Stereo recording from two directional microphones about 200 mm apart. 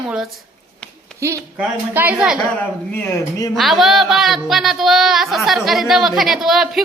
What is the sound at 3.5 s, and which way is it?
Speech, centre (ahead or behind).